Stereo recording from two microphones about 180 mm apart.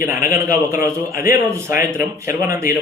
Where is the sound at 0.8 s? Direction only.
55° left (ahead or behind).